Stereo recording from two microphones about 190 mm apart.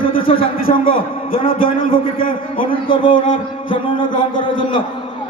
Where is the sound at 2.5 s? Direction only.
30° left (ahead or behind).